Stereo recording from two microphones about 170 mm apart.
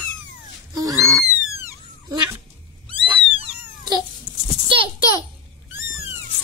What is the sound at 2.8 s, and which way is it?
Cat, 35° right (ahead or behind).